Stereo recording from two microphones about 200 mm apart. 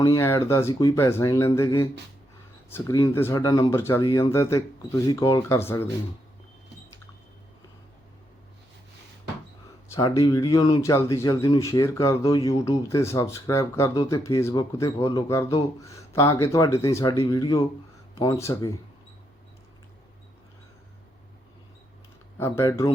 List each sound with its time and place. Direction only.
0.0 s speech: 15° left (ahead or behind)
9.9 s speech: 20° left (ahead or behind)
22.4 s speech: 15° left (ahead or behind)